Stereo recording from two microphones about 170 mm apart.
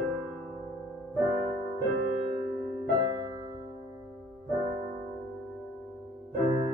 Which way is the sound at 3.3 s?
25° right (ahead or behind).